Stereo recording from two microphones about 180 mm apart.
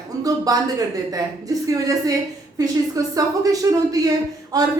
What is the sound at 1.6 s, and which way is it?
A woman's voice, 20° right (ahead or behind).